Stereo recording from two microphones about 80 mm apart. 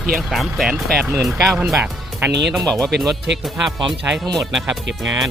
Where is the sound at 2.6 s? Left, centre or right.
Centre.